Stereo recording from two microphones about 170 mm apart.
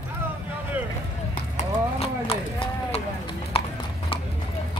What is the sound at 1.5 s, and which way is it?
Clip-clop, 35° left (ahead or behind).